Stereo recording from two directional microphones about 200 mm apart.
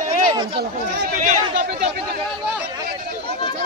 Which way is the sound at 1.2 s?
35° right (ahead or behind).